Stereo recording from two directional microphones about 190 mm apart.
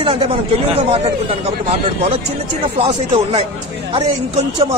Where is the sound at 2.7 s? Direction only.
30° right (ahead or behind).